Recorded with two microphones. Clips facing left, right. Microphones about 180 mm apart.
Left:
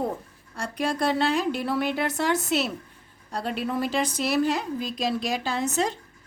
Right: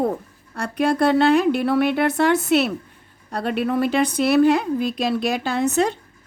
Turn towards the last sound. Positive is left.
turn(degrees=-60)  # may be behind; listen again after turning